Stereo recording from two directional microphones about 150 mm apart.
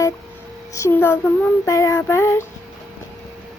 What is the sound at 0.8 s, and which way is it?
Child singing, 15° left (ahead or behind).